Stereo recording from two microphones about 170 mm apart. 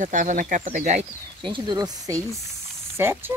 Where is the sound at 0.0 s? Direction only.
50° right (ahead or behind).